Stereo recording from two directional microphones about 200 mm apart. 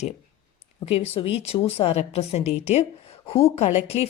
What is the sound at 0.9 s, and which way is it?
A woman's voice, 30° left (ahead or behind).